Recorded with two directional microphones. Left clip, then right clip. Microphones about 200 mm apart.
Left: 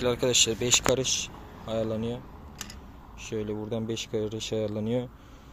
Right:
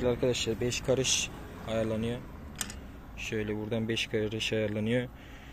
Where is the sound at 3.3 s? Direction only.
10° left (ahead or behind).